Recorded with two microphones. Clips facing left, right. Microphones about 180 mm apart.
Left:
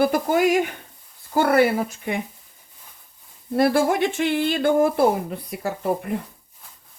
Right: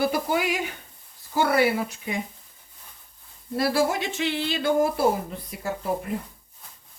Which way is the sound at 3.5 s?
55° left (ahead or behind).